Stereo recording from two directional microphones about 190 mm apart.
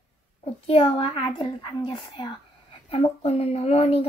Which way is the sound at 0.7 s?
25° left (ahead or behind).